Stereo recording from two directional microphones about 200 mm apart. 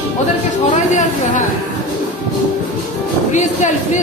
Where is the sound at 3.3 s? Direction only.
40° left (ahead or behind).